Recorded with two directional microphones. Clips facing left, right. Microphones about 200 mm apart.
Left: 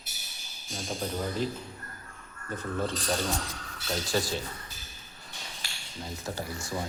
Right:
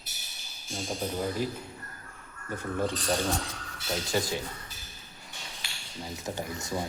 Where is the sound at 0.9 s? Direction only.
5° right (ahead or behind).